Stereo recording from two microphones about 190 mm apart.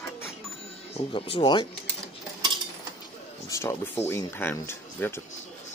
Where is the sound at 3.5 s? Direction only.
15° left (ahead or behind).